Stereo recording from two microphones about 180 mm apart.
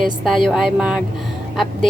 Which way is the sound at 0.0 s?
Centre (ahead or behind).